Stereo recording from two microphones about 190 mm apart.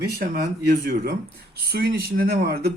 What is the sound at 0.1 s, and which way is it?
Speech, 50° right (ahead or behind).